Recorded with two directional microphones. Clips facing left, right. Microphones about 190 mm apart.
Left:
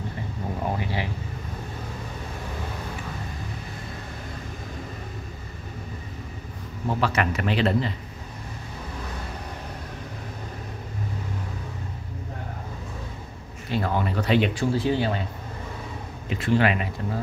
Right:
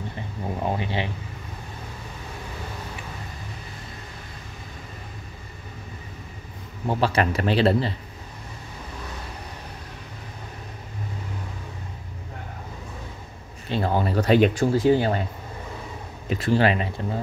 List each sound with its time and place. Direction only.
0.7 s speech: 20° right (ahead or behind)
6.9 s speech: 30° right (ahead or behind)
13.7 s speech: 30° right (ahead or behind); by 15.2 s 45° right (ahead or behind)
16.3 s speech: 35° right (ahead or behind)